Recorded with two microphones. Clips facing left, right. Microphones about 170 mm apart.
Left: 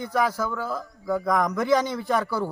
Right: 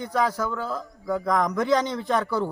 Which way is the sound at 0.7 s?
10° left (ahead or behind).